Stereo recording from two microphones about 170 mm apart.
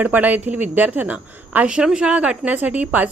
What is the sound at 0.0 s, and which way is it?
Speech, 10° right (ahead or behind).